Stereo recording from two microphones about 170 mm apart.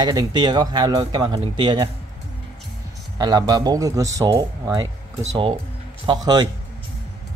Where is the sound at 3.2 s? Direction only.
25° right (ahead or behind).